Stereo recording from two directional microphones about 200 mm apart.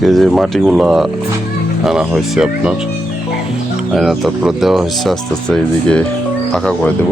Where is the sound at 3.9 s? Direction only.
Centre (ahead or behind).